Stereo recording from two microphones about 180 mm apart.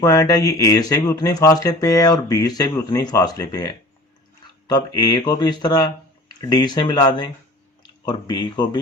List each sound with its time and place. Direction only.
0.0 s speech: 20° left (ahead or behind)